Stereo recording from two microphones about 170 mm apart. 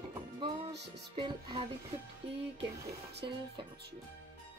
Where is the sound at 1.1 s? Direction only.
30° right (ahead or behind).